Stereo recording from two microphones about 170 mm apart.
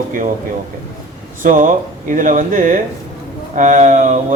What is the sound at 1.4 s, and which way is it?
Speech, 50° right (ahead or behind).